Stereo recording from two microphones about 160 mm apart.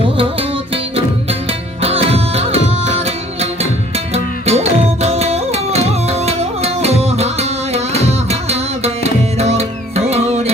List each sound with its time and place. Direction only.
0.0 s music: 35° right (ahead or behind)
1.8 s music: 40° right (ahead or behind)